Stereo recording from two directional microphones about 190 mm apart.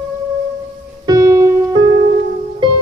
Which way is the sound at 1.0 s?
20° right (ahead or behind).